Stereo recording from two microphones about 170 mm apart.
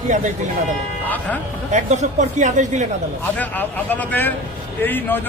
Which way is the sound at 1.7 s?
45° right (ahead or behind).